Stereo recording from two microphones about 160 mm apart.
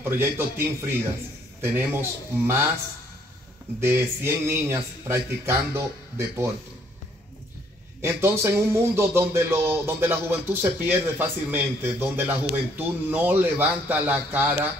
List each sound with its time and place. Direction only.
0.0 s speech: 15° right (ahead or behind)
3.8 s speech: 15° right (ahead or behind)
8.0 s speech: 15° right (ahead or behind)